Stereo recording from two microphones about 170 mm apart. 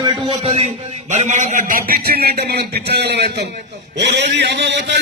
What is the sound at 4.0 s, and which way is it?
A man's voice, 90° right.